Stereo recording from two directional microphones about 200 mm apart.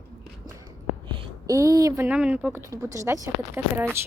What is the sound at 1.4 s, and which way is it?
Speech, 15° right (ahead or behind).